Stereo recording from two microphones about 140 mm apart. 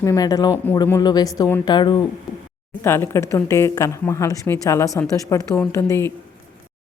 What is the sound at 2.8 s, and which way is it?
A woman's voice, 20° left (ahead or behind).